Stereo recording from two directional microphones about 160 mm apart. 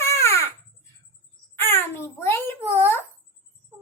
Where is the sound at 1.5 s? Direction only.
15° left (ahead or behind).